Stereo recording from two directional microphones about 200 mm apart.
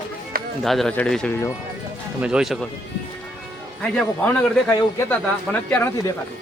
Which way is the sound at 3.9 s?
5° left (ahead or behind).